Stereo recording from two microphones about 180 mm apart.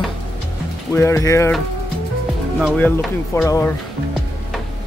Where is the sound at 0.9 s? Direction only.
15° left (ahead or behind).